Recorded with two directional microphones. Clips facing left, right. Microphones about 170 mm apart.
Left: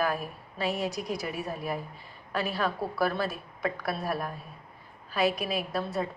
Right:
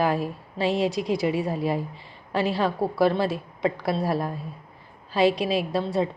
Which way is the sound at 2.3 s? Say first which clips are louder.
Right 6 dB; 30° right (ahead or behind).